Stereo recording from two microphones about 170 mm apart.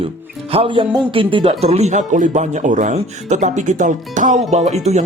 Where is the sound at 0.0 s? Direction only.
35° right (ahead or behind).